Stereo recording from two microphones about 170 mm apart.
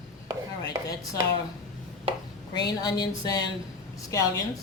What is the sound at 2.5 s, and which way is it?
Speech, 25° left (ahead or behind).